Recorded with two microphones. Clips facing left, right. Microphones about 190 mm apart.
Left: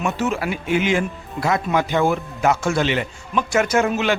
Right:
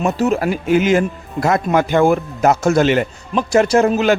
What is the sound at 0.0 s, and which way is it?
A man's voice, 35° right (ahead or behind).